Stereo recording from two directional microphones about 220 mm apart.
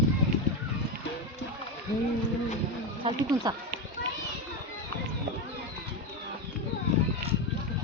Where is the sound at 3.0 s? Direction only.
20° right (ahead or behind).